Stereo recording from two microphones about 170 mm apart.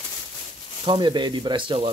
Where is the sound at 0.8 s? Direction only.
30° right (ahead or behind).